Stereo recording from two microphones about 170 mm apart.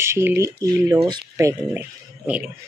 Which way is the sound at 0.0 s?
15° right (ahead or behind).